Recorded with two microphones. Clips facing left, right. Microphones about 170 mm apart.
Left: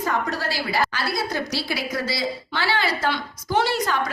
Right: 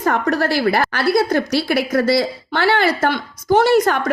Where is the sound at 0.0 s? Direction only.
60° right (ahead or behind).